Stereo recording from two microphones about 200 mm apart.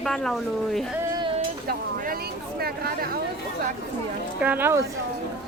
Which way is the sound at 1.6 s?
45° right (ahead or behind).